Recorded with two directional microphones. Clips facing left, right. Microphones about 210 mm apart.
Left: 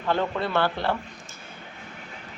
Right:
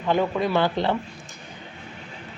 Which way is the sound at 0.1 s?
15° right (ahead or behind).